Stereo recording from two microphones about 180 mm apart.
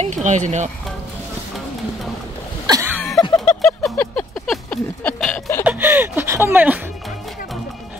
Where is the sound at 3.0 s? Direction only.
Centre (ahead or behind).